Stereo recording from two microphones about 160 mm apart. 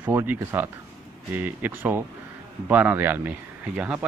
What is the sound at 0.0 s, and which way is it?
Speech, 10° right (ahead or behind).